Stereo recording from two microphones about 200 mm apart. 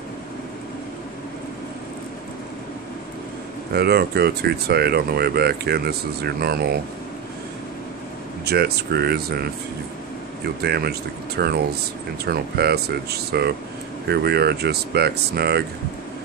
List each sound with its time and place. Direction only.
3.7 s speech: 55° right (ahead or behind)
8.5 s speech: 55° right (ahead or behind)